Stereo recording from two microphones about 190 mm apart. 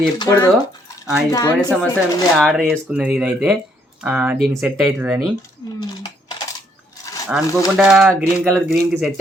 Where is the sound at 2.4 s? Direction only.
Centre (ahead or behind).